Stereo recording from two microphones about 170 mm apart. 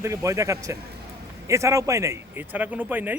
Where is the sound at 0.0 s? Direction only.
15° right (ahead or behind).